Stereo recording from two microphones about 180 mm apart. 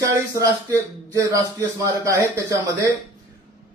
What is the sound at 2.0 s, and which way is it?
Speech, 15° right (ahead or behind).